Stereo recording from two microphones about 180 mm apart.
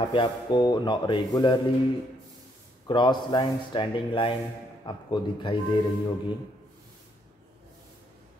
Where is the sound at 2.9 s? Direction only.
25° left (ahead or behind).